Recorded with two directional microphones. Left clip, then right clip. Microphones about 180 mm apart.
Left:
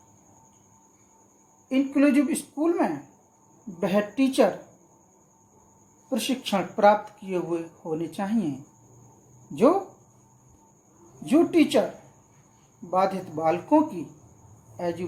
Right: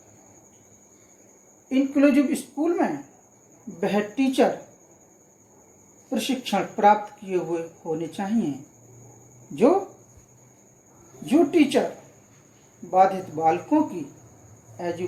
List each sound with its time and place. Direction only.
1.7 s speech: 40° left (ahead or behind)
6.1 s speech: 40° left (ahead or behind)
11.3 s speech: 40° left (ahead or behind)
12.9 s speech: 40° left (ahead or behind)